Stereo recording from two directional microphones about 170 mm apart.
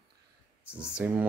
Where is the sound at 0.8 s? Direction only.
5° right (ahead or behind).